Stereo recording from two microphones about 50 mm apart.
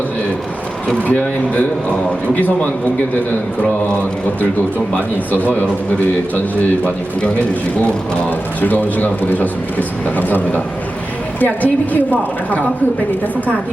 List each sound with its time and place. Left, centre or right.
1.0 s a man's voice: left
5.3 s a man's voice: left
8.6 s a man's voice: left